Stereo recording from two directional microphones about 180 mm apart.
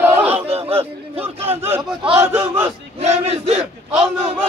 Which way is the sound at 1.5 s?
10° right (ahead or behind).